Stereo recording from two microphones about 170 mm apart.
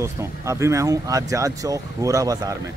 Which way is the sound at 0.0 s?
15° right (ahead or behind).